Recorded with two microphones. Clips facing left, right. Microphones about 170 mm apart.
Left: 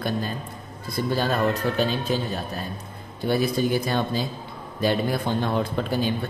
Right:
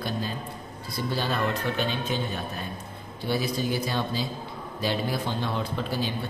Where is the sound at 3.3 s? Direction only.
55° left (ahead or behind).